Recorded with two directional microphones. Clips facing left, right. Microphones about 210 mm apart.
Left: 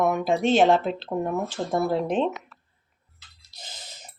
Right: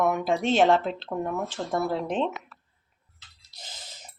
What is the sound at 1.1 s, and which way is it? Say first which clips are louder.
Speech: left 3 dB; 20° left (ahead or behind).